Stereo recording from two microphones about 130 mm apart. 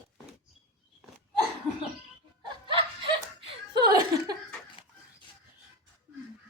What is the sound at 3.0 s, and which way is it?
Laughter, 35° right (ahead or behind).